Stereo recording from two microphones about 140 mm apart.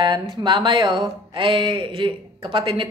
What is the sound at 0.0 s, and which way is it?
Speech, 35° right (ahead or behind).